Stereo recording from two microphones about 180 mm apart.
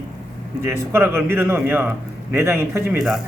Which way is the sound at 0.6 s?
15° right (ahead or behind).